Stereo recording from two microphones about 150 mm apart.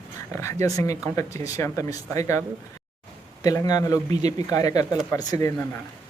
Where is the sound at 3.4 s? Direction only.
25° left (ahead or behind).